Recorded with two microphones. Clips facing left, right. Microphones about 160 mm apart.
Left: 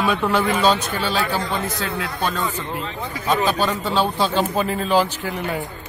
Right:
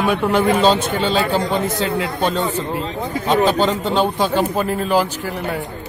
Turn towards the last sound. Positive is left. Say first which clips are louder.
# right 1 dB
turn(degrees=-10)  # may be behind; listen again after turning